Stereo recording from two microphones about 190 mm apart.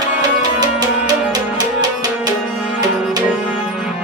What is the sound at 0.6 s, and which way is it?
Music, 20° right (ahead or behind).